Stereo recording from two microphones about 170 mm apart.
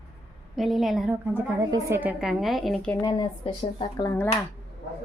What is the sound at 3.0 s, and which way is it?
Speech, 25° left (ahead or behind).